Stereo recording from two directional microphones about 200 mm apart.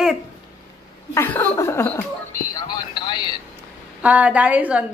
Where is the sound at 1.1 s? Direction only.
10° left (ahead or behind).